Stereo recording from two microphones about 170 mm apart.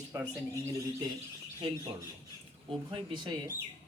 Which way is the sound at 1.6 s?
30° right (ahead or behind).